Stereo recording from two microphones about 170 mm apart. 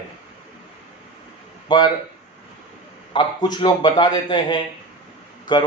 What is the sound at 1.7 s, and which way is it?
Speech, 30° left (ahead or behind).